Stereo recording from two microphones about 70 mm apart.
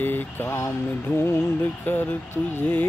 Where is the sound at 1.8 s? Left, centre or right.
Left.